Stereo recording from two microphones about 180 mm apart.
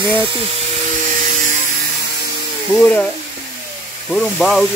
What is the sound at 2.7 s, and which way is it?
Speech, 10° left (ahead or behind).